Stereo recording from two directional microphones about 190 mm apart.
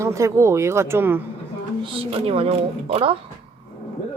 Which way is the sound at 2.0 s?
30° right (ahead or behind).